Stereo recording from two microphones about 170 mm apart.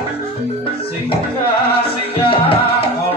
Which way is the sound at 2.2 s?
30° left (ahead or behind).